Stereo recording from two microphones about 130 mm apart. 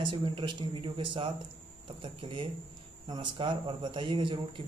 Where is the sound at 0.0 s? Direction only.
40° right (ahead or behind).